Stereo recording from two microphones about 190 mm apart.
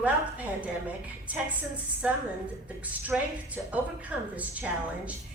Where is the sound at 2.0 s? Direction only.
10° right (ahead or behind).